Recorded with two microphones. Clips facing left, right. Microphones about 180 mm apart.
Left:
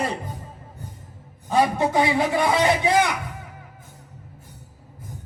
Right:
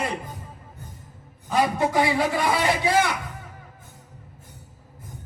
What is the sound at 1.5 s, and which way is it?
A man's voice, 25° left (ahead or behind).